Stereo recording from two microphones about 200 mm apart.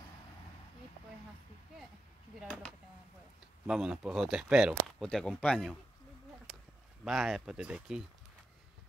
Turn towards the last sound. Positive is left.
turn(degrees=-5)  # may be behind; listen again after turning